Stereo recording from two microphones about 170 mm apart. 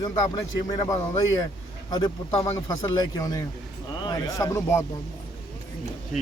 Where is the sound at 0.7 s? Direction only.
20° left (ahead or behind).